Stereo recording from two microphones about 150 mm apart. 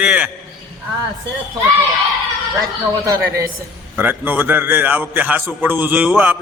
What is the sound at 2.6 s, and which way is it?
A man's voice, 20° right (ahead or behind).